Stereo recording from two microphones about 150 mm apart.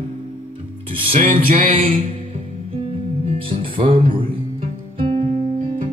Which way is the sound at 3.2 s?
40° right (ahead or behind).